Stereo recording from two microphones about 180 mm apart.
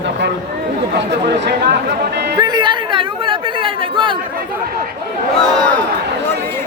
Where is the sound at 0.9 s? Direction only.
65° right (ahead or behind).